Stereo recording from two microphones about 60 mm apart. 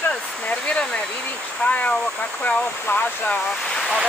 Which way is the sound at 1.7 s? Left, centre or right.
Left.